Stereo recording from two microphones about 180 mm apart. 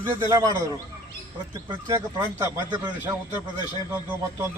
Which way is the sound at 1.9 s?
10° right (ahead or behind).